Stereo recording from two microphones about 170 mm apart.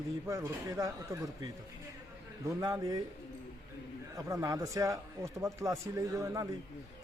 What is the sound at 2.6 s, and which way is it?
Speech, 20° right (ahead or behind).